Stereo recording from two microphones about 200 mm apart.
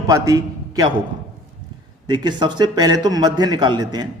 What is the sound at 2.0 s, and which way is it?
A man's voice, 20° right (ahead or behind).